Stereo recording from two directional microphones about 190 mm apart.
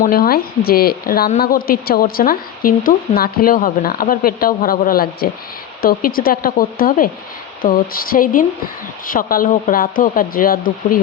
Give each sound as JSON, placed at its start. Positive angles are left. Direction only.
{"t": 0.0, "sound": "a woman's voice", "side_deg": 50}